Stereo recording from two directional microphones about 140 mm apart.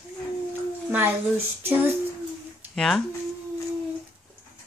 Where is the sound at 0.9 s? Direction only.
15° right (ahead or behind).